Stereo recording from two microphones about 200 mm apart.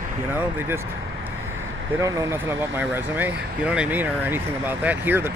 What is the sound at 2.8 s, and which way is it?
Speech, 10° right (ahead or behind).